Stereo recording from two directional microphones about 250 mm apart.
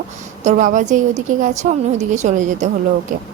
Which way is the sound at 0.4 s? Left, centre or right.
Right.